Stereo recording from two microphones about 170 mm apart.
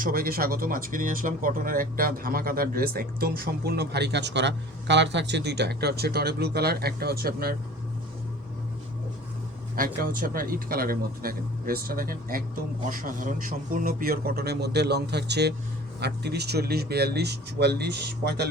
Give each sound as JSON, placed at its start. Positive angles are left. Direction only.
{"t": 0.0, "sound": "speech", "side_deg": -60}
{"t": 9.7, "sound": "speech", "side_deg": -55}